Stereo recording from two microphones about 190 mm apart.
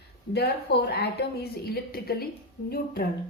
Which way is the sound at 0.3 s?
60° left (ahead or behind).